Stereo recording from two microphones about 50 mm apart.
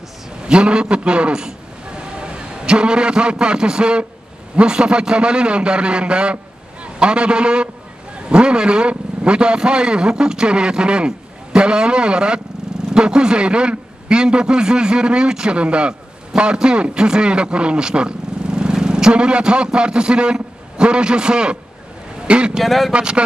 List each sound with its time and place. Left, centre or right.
0.4 s a man's voice: centre
22.6 s speech: centre
22.9 s a man's voice: right